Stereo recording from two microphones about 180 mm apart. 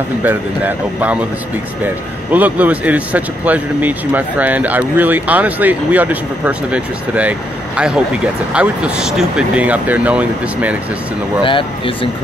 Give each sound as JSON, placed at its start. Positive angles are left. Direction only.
{"t": 0.2, "sound": "speech", "side_deg": -10}
{"t": 2.3, "sound": "speech", "side_deg": -10}
{"t": 11.4, "sound": "speech", "side_deg": 30}